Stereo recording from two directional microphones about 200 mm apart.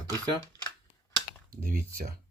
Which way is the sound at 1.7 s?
45° right (ahead or behind).